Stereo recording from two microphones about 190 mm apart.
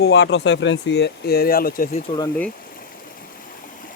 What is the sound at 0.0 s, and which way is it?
Speech, 65° left (ahead or behind).